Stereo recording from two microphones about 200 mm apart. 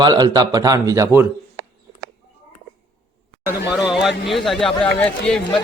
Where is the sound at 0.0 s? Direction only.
20° right (ahead or behind).